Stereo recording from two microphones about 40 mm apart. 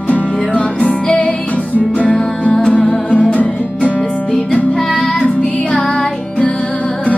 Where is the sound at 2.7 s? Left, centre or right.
Left.